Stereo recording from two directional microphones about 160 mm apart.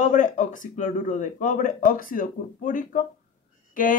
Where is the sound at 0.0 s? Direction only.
50° left (ahead or behind).